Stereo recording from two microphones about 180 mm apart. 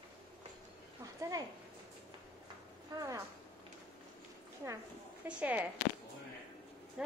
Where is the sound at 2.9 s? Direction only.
15° right (ahead or behind).